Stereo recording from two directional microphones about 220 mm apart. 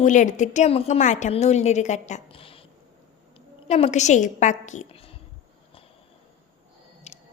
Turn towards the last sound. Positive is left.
turn(degrees=30)  # may be behind; listen again after turning